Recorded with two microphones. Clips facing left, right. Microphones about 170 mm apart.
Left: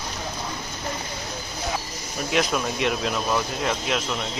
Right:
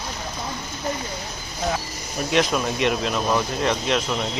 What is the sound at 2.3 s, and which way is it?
Speech, centre (ahead or behind).